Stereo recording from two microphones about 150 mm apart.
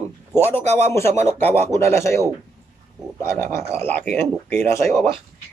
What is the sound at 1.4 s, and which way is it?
Speech, 15° left (ahead or behind).